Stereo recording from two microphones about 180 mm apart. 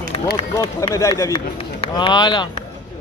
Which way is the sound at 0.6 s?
20° left (ahead or behind).